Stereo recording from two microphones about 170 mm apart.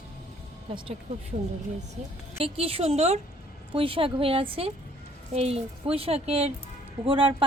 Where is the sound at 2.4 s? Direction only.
35° right (ahead or behind).